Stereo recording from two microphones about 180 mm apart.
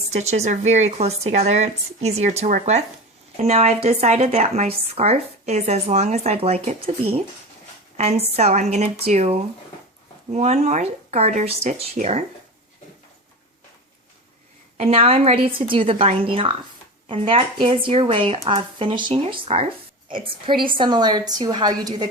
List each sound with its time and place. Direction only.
0.1 s speech: 40° right (ahead or behind)
7.9 s a woman's voice: 35° right (ahead or behind)
14.8 s a woman's voice: 35° right (ahead or behind)